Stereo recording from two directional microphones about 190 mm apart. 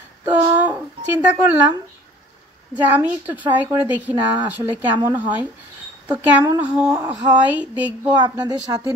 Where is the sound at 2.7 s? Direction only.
10° right (ahead or behind).